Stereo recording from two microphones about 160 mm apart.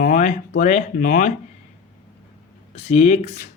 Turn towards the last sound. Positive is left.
turn(degrees=45)  # may be behind; listen again after turning